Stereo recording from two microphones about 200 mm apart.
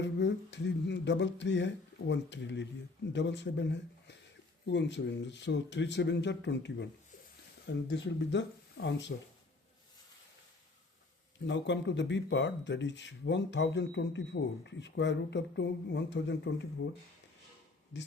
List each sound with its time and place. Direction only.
0.0 s speech: 65° left (ahead or behind)
11.4 s speech: 65° left (ahead or behind)
17.9 s speech: 65° left (ahead or behind)